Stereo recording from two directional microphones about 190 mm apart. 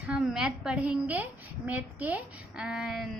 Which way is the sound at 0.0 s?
Centre (ahead or behind).